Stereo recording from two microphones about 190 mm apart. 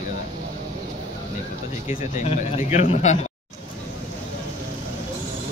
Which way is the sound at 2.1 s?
35° left (ahead or behind).